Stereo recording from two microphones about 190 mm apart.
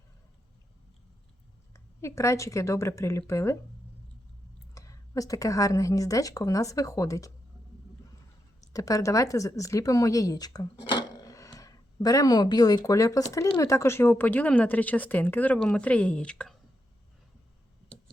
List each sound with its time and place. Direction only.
1.7 s speech: 15° left (ahead or behind)
4.7 s speech: 15° left (ahead or behind)
8.6 s speech: 20° left (ahead or behind)